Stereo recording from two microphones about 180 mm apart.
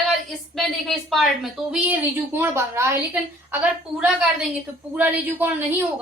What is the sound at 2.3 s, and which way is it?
Speech, 15° right (ahead or behind).